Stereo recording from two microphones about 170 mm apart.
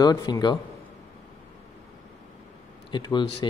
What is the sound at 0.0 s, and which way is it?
Speech, 25° left (ahead or behind).